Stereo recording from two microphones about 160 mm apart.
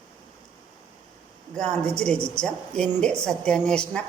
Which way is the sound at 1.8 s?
5° left (ahead or behind).